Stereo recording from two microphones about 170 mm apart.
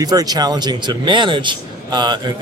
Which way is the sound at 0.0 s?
20° right (ahead or behind).